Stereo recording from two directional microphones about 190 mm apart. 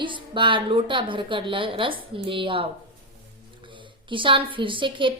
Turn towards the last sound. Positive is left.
turn(degrees=-25)  # may be behind; listen again after turning